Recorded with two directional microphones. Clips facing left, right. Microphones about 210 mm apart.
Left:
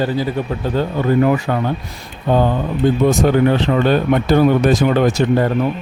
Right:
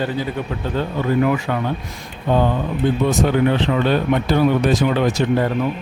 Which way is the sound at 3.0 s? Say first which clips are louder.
Left 4 dB; 45° left (ahead or behind).